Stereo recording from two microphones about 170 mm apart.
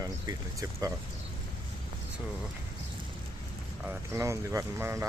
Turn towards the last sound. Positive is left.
turn(degrees=-15)  # may be behind; listen again after turning